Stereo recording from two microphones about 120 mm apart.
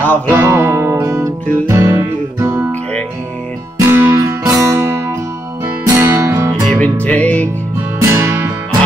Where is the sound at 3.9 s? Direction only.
15° right (ahead or behind).